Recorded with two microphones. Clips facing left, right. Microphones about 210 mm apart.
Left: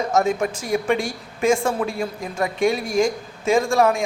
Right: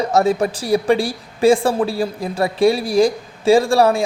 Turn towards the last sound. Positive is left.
turn(degrees=-35)  # may be behind; listen again after turning